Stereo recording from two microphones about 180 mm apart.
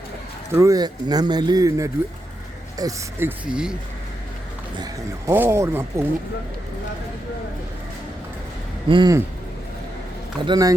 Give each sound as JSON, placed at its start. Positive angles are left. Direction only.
{"t": 0.5, "sound": "speech", "side_deg": -15}
{"t": 4.8, "sound": "speech", "side_deg": -15}
{"t": 8.9, "sound": "speech", "side_deg": -25}
{"t": 10.4, "sound": "speech", "side_deg": -20}